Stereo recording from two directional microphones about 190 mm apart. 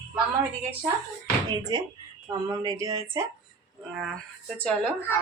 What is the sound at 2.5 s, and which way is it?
Speech, 20° right (ahead or behind).